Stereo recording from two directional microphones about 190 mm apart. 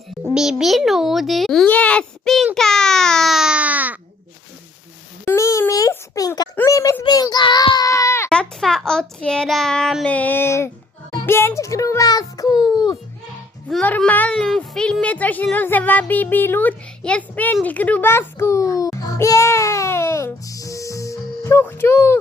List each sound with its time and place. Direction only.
0.3 s a child's voice: centre (ahead or behind)
2.6 s baby cry: 5° left (ahead or behind)
5.2 s a sound: 15° left (ahead or behind)
11.3 s a child's voice: 10° left (ahead or behind)
13.7 s a child's voice: 5° left (ahead or behind)